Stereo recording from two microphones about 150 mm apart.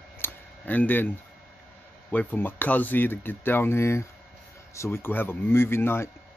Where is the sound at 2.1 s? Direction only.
10° left (ahead or behind).